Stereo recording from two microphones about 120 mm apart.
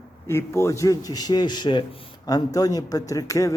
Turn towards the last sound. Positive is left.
turn(degrees=25)  # may be behind; listen again after turning